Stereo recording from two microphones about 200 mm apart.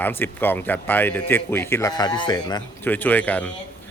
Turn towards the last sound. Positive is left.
turn(degrees=10)  # may be behind; listen again after turning